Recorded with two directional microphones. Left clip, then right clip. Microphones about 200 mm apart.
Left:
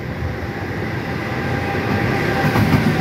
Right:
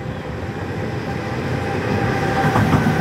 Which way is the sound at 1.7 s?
45° left (ahead or behind).